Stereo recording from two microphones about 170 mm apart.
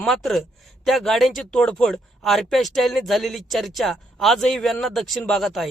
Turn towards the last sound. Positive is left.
turn(degrees=0)  # may be behind; listen again after turning